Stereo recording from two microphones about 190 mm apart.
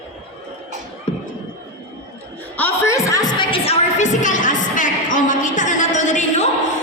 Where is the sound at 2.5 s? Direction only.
10° left (ahead or behind); by 6.4 s 40° left (ahead or behind).